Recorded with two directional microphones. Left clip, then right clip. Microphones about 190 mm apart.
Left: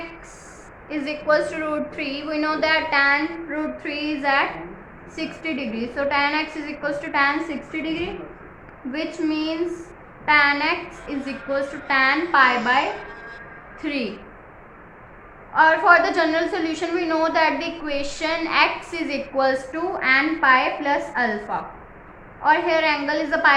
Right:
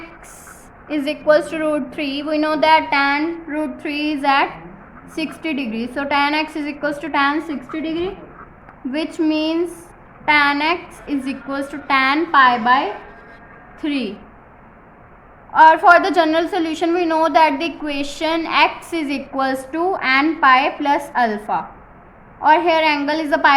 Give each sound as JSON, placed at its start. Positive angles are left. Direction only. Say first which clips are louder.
{"t": 0.9, "sound": "a woman's voice", "louder": "right 5 dB", "side_deg": -45}
{"t": 9.1, "sound": "a woman's voice", "louder": "right 6 dB", "side_deg": -40}
{"t": 13.8, "sound": "a woman's voice", "louder": "right 3 dB", "side_deg": -35}
{"t": 15.5, "sound": "a woman's voice", "louder": "right 5 dB", "side_deg": -45}